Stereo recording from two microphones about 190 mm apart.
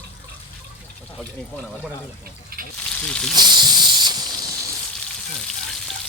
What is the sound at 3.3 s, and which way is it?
Snake, 20° right (ahead or behind).